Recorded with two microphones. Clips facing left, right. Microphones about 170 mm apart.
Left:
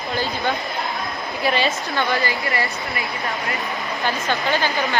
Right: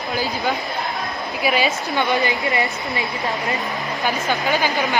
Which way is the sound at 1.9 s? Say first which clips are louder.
Right 2 dB; 20° right (ahead or behind).